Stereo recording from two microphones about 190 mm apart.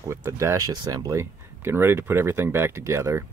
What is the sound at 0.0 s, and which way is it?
Speech, 15° right (ahead or behind).